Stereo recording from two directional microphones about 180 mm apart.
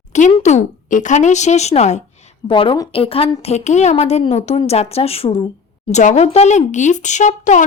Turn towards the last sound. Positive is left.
turn(degrees=45)  # may be behind; listen again after turning